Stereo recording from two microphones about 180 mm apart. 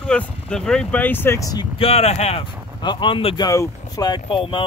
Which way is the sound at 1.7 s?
35° left (ahead or behind).